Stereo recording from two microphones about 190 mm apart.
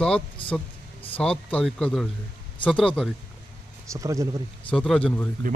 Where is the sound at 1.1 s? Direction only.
5° left (ahead or behind).